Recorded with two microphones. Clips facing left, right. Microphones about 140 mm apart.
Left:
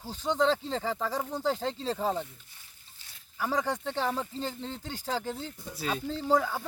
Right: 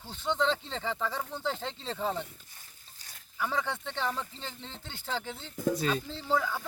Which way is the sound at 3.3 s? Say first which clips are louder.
Left 3 dB; 40° left (ahead or behind).